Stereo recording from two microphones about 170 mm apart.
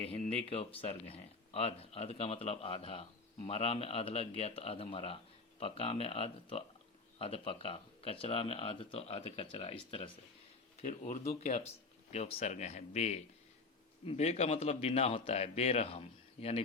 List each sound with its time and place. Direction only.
0.0 s speech: 35° left (ahead or behind)